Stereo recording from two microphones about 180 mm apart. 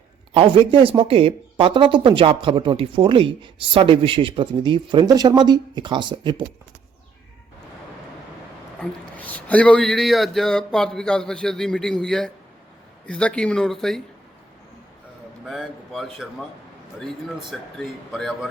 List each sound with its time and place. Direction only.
0.3 s speech: 30° right (ahead or behind)
8.8 s a man's voice: 10° left (ahead or behind)
15.4 s a man's voice: centre (ahead or behind)